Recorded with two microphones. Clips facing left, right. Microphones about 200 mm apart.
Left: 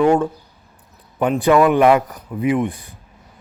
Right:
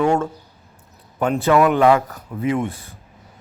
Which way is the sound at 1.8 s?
20° left (ahead or behind).